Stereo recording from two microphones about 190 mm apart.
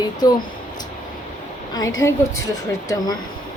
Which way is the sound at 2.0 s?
15° left (ahead or behind).